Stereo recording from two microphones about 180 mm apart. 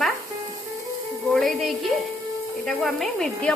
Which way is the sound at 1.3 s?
Centre (ahead or behind).